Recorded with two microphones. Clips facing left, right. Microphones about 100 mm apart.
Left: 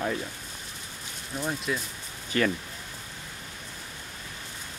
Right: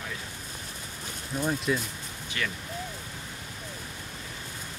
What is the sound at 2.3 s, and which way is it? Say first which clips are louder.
Speech: left 8 dB; 40° left (ahead or behind).